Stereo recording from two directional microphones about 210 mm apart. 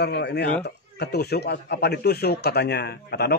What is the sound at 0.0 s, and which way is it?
A man's voice, 55° left (ahead or behind).